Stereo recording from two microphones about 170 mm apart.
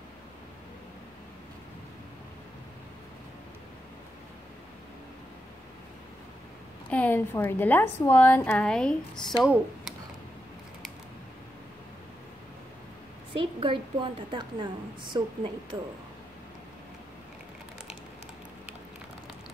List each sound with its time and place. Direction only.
6.9 s a woman's voice: 10° left (ahead or behind)
13.3 s a woman's voice: 30° right (ahead or behind)